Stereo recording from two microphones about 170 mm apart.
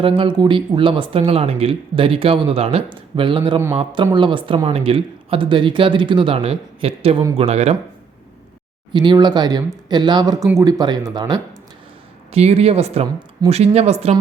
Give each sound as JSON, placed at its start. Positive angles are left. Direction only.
{"t": 0.0, "sound": "speech", "side_deg": -30}
{"t": 8.9, "sound": "speech", "side_deg": -25}
{"t": 12.3, "sound": "speech", "side_deg": -35}